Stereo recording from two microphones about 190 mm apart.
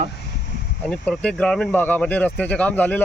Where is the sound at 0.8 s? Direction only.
5° left (ahead or behind).